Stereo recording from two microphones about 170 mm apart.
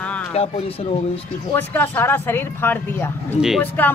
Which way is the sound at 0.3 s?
35° left (ahead or behind).